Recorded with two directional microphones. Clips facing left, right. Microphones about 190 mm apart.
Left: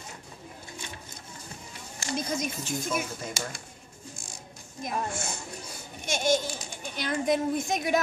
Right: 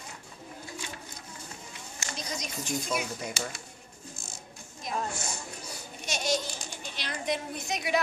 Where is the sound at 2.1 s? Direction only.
50° left (ahead or behind).